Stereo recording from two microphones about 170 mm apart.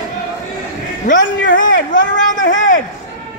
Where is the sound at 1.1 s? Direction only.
45° left (ahead or behind).